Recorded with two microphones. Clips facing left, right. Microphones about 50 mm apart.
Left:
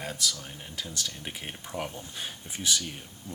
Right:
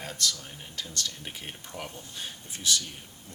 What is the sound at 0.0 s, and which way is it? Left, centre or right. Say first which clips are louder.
Speech: even; centre.